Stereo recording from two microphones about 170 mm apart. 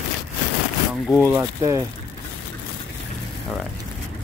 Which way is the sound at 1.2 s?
15° right (ahead or behind).